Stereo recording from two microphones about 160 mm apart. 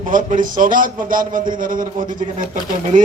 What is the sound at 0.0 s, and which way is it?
A man's voice, 55° right (ahead or behind).